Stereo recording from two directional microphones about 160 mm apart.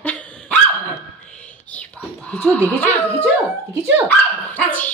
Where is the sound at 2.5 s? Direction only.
10° left (ahead or behind).